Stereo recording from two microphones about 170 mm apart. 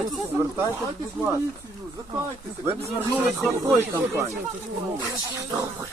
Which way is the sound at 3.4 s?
10° left (ahead or behind).